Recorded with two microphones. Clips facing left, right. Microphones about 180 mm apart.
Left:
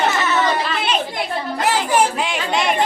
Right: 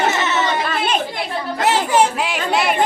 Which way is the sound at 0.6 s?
50° right (ahead or behind).